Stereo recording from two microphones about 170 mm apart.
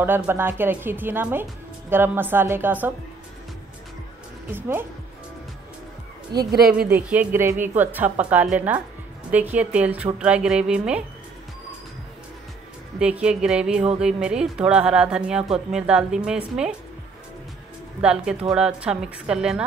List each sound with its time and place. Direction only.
0.0 s speech: 10° right (ahead or behind)
4.5 s speech: 10° right (ahead or behind)
6.3 s speech: 75° right (ahead or behind)
6.9 s speech: 10° right (ahead or behind)
13.0 s speech: 5° right (ahead or behind)
18.0 s speech: 5° right (ahead or behind)